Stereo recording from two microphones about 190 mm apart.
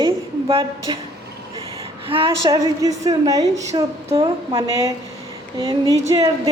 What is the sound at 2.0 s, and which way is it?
A woman's voice, 30° right (ahead or behind).